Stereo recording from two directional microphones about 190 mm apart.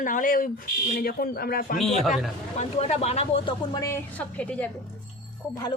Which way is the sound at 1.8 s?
Centre (ahead or behind).